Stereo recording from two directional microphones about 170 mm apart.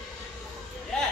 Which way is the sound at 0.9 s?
5° left (ahead or behind).